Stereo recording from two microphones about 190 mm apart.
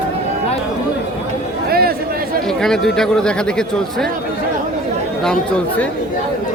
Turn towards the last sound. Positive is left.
turn(degrees=5)  # may be behind; listen again after turning